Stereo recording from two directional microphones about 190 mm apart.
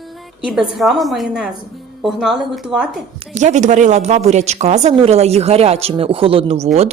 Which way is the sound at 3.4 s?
40° right (ahead or behind).